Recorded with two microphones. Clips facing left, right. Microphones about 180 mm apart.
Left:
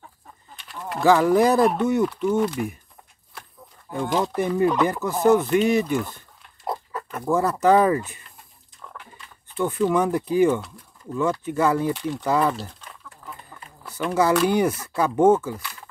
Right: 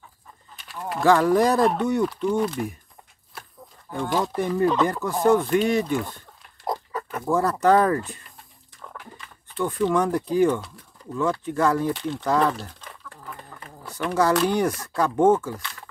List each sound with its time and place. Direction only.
0.7 s speech: centre (ahead or behind)
3.9 s speech: 20° left (ahead or behind)
4.3 s speech: 5° left (ahead or behind)
9.6 s speech: 5° left (ahead or behind)
13.1 s a sound: 70° right (ahead or behind)
13.9 s speech: 5° left (ahead or behind)